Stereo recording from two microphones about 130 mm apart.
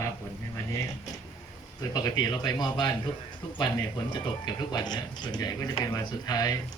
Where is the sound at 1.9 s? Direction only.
30° left (ahead or behind).